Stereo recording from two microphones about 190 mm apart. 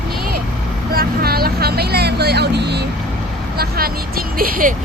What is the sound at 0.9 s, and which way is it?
Speech, 55° right (ahead or behind).